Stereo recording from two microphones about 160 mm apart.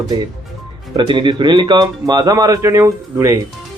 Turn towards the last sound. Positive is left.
turn(degrees=-20)  # may be behind; listen again after turning